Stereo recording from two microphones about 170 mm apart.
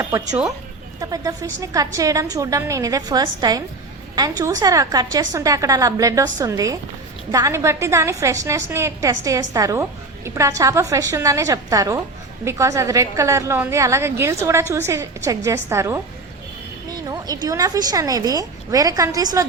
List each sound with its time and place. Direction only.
0.0 s a woman's voice: 15° right (ahead or behind)
17.1 s a woman's voice: 20° right (ahead or behind)